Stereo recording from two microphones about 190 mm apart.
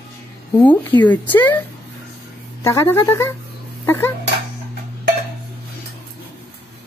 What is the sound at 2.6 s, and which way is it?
Speech, 15° left (ahead or behind).